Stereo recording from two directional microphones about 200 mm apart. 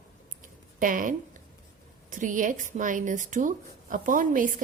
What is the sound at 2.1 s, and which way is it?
A woman's voice, 40° right (ahead or behind).